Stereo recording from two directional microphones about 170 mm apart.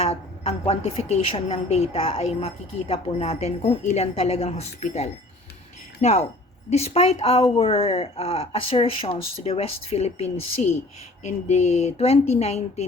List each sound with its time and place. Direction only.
0.0 s a woman's voice: 35° left (ahead or behind)